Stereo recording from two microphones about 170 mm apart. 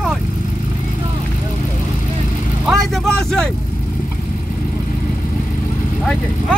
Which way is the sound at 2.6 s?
Centre (ahead or behind).